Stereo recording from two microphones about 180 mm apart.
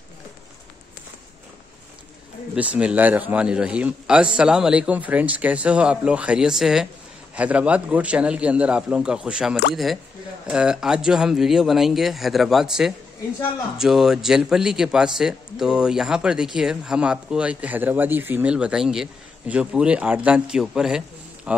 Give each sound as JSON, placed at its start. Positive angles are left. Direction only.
{"t": 2.5, "sound": "a man's voice", "side_deg": -5}